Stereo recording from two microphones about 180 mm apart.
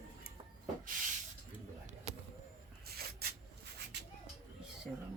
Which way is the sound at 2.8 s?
60° right (ahead or behind).